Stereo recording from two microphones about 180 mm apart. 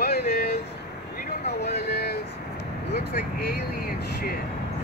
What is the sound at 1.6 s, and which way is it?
Speech, 65° left (ahead or behind).